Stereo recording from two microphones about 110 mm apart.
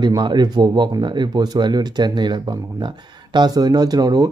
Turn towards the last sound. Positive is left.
turn(degrees=-35)  # may be behind; listen again after turning